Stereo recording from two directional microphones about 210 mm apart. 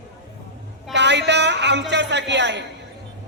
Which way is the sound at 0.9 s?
55° right (ahead or behind).